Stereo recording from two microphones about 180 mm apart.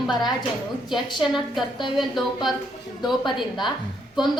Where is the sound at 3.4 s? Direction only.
Centre (ahead or behind).